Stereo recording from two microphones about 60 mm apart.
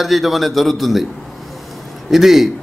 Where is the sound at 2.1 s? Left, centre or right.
Centre.